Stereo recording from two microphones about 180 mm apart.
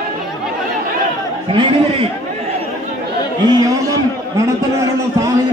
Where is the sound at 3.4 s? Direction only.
20° right (ahead or behind).